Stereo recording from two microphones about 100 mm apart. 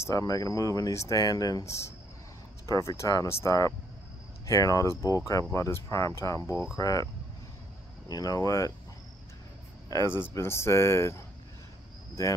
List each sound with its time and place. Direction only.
0.1 s speech: 35° left (ahead or behind)
8.1 s speech: 40° left (ahead or behind)
10.1 s speech: 25° left (ahead or behind)